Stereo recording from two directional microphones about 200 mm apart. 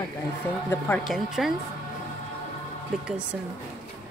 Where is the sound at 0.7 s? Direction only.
10° left (ahead or behind).